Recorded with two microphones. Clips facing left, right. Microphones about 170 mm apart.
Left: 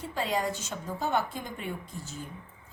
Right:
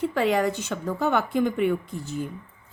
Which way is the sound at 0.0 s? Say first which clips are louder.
Right 8 dB; 65° right (ahead or behind).